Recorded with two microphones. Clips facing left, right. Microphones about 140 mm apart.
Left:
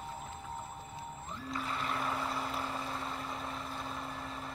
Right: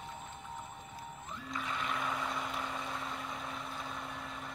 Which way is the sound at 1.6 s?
35° left (ahead or behind).